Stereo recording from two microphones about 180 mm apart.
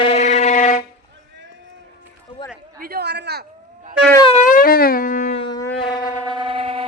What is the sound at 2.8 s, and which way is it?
Speech, 60° right (ahead or behind).